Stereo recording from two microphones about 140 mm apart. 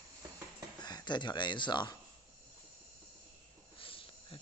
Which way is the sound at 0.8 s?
30° left (ahead or behind).